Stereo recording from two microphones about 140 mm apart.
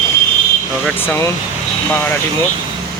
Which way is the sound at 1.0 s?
15° left (ahead or behind).